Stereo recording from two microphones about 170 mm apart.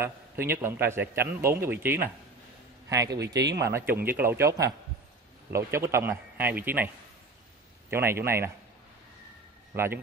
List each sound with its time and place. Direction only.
0.0 s a man's voice: 15° right (ahead or behind)
7.9 s a man's voice: 15° right (ahead or behind)
9.8 s a man's voice: 15° right (ahead or behind)